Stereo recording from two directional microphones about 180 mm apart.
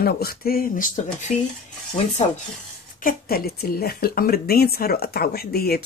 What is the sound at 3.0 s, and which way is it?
A woman's voice, 55° left (ahead or behind).